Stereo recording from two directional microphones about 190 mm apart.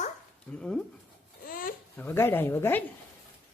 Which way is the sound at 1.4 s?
50° left (ahead or behind).